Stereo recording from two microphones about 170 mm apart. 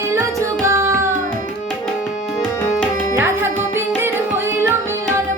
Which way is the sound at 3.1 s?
15° right (ahead or behind).